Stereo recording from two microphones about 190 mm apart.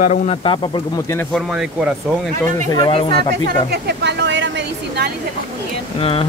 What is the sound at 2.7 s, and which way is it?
Speech, 30° left (ahead or behind).